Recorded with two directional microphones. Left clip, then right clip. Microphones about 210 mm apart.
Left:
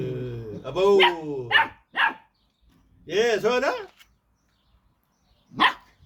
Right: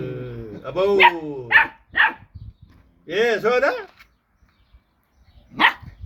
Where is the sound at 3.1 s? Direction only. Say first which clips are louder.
Right 3 dB; 55° left (ahead or behind).